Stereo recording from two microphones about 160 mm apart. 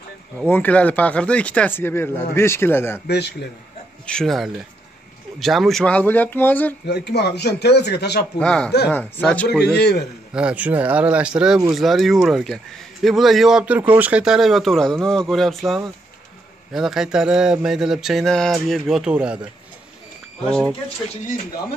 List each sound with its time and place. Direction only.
0.5 s speech: 10° left (ahead or behind)
3.1 s speech: 90° left
4.0 s speech: 5° left (ahead or behind)
6.9 s speech: 90° left
8.4 s speech: 5° left (ahead or behind)
9.7 s speech: 90° left
10.3 s speech: 10° right (ahead or behind)
20.4 s speech: 5° left (ahead or behind)